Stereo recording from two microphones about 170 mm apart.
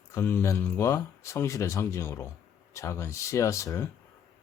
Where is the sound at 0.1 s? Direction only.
15° left (ahead or behind).